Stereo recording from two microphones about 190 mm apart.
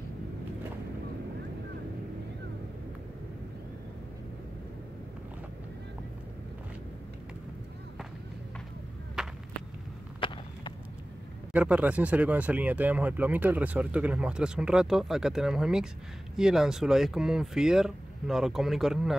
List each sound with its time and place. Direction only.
9.2 s whip: 5° right (ahead or behind)
10.2 s a sound: 25° left (ahead or behind)
11.5 s speech: 5° right (ahead or behind)